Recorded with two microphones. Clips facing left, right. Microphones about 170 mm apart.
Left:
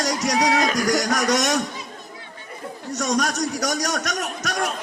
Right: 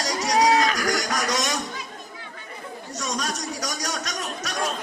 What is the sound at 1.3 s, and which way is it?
Speech, 70° left (ahead or behind).